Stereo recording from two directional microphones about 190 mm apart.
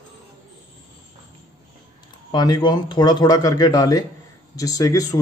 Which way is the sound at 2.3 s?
20° left (ahead or behind).